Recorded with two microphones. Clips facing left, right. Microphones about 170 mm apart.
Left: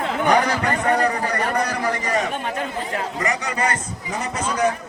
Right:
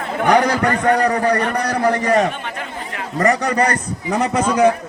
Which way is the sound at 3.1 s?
60° right (ahead or behind).